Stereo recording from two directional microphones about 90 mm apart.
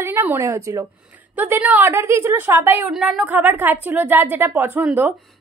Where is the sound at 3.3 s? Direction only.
20° right (ahead or behind).